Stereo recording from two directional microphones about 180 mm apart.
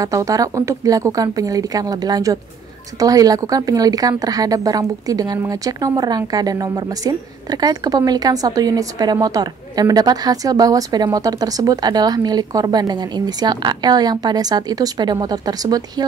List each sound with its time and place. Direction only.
0.0 s a woman's voice: 20° right (ahead or behind)